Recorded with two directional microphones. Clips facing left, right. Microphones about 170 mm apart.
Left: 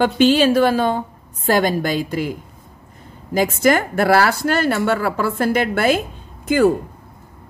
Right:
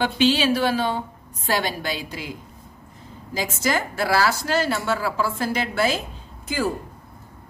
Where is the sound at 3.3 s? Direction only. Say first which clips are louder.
Left 8 dB; 55° left (ahead or behind).